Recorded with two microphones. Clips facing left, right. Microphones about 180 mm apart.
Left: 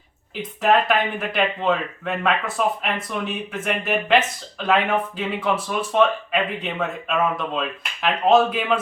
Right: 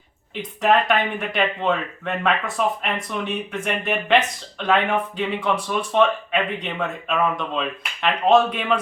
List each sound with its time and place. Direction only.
0.3 s speech: centre (ahead or behind)